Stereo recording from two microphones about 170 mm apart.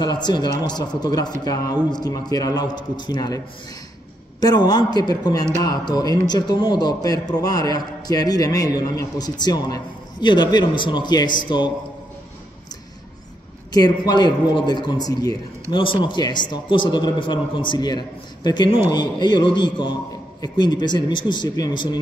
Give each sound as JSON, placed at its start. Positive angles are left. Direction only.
{"t": 0.0, "sound": "a man's voice", "side_deg": 25}
{"t": 13.7, "sound": "a man's voice", "side_deg": 25}